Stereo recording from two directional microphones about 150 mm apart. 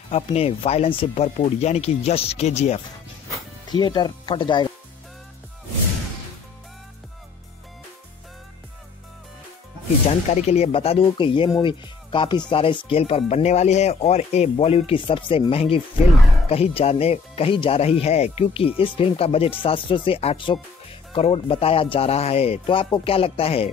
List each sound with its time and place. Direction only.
0.1 s speech: 45° left (ahead or behind)
3.7 s speech: 30° left (ahead or behind)
10.3 s speech: 45° left (ahead or behind)